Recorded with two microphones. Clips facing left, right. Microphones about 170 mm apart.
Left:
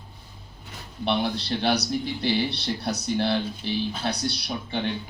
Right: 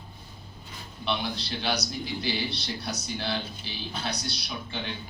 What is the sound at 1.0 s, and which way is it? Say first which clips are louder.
A man's voice: left 6 dB; 60° left (ahead or behind).